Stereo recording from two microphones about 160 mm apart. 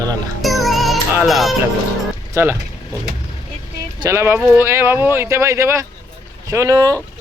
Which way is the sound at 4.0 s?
20° right (ahead or behind).